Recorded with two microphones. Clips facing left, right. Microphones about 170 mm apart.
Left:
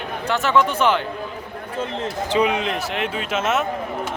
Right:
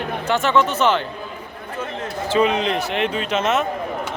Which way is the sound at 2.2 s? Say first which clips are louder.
Right 2 dB; 15° left (ahead or behind).